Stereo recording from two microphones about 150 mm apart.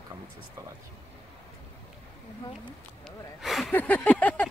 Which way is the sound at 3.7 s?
10° left (ahead or behind).